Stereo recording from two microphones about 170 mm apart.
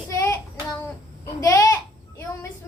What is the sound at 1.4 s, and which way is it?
Speech, 20° left (ahead or behind).